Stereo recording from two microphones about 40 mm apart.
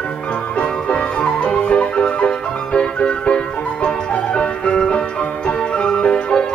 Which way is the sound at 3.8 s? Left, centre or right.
Left.